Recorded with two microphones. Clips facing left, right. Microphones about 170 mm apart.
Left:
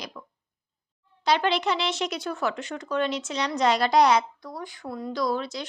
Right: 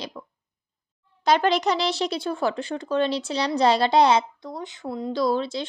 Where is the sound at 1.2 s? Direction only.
45° right (ahead or behind); by 5.6 s 30° right (ahead or behind).